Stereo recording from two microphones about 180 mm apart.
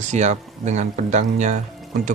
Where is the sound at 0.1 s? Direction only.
40° right (ahead or behind).